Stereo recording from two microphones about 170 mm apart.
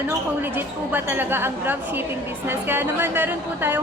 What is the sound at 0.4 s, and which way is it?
A woman's voice, 10° right (ahead or behind).